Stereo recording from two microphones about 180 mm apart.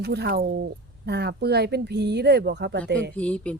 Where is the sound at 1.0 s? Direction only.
65° right (ahead or behind).